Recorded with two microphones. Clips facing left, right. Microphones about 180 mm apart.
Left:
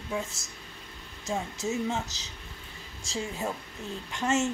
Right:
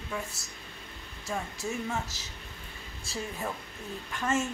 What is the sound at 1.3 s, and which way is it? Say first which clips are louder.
Speech: left 3 dB; 20° left (ahead or behind).